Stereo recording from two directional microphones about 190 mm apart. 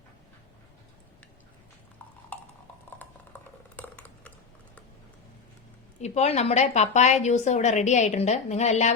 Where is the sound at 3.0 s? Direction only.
10° left (ahead or behind).